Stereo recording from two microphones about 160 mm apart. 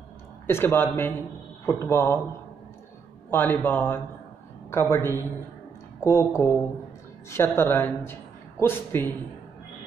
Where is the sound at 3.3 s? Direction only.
10° left (ahead or behind).